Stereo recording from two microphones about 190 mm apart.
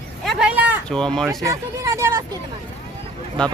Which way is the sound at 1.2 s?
15° right (ahead or behind).